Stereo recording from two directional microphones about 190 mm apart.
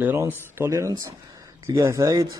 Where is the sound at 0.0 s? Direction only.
10° right (ahead or behind).